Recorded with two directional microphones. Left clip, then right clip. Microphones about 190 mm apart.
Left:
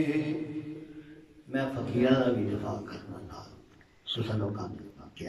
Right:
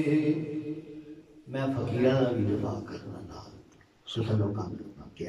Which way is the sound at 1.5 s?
Centre (ahead or behind).